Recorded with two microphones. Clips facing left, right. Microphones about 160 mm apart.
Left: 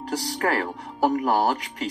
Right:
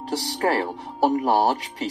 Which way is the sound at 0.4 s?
25° right (ahead or behind).